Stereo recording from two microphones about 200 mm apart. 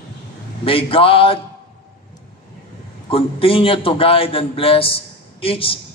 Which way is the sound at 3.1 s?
25° left (ahead or behind).